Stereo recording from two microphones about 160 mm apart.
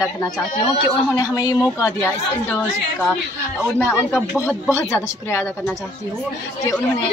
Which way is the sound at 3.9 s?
5° right (ahead or behind).